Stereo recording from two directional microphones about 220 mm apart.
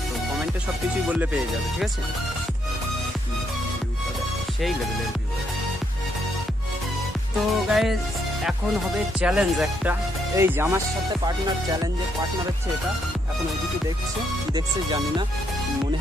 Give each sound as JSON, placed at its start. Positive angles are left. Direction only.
{"t": 7.6, "sound": "music", "side_deg": 0}
{"t": 9.2, "sound": "speech", "side_deg": -5}
{"t": 14.5, "sound": "music", "side_deg": -20}